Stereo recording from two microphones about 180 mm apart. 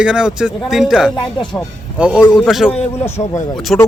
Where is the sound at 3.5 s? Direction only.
Centre (ahead or behind).